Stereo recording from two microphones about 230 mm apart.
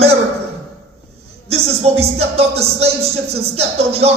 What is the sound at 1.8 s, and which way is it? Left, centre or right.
Speech, right.